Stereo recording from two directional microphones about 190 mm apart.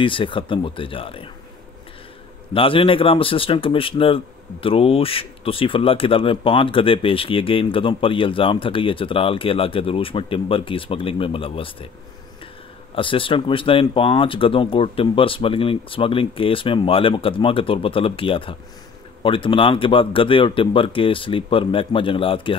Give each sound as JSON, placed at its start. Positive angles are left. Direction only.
{"t": 0.0, "sound": "speech", "side_deg": 25}
{"t": 2.5, "sound": "speech", "side_deg": 30}
{"t": 12.9, "sound": "speech", "side_deg": 25}